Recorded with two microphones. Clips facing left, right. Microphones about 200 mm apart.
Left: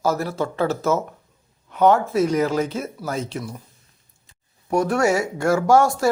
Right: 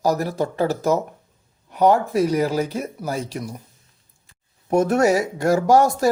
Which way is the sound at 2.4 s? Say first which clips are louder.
Even; 10° right (ahead or behind).